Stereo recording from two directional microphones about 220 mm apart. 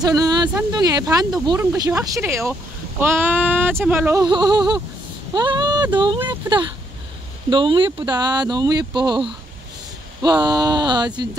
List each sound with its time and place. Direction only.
0.0 s speech: 15° right (ahead or behind)